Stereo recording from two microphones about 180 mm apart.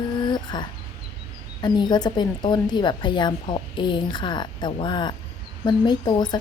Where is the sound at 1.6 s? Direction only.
25° left (ahead or behind).